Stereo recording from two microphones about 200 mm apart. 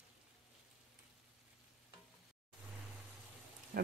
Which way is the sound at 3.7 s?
45° right (ahead or behind).